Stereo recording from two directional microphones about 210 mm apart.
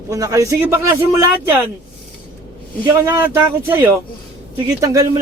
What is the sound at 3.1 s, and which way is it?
Speech, 10° right (ahead or behind).